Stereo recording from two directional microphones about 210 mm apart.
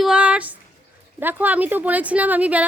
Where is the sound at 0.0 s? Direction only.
5° right (ahead or behind).